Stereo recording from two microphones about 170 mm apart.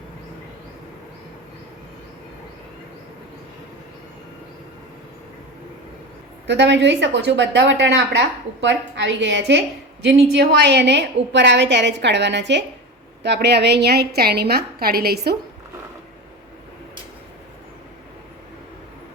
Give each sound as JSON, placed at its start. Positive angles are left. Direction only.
{"t": 6.5, "sound": "a woman's voice", "side_deg": -90}